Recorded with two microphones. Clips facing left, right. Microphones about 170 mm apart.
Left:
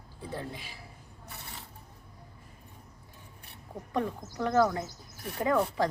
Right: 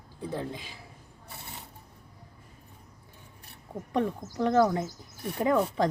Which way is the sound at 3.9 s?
20° right (ahead or behind).